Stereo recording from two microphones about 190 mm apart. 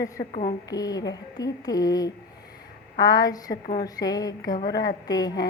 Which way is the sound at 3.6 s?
45° left (ahead or behind).